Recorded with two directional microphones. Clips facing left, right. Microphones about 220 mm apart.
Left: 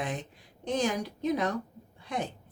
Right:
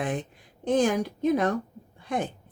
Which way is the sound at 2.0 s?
50° right (ahead or behind).